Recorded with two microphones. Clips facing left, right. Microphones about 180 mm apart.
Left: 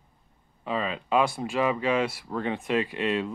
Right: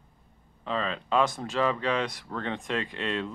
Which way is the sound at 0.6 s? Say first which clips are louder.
Left 1 dB; 10° left (ahead or behind).